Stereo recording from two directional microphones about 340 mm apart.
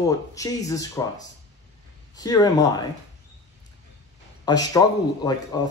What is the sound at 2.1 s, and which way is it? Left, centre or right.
Speech, centre.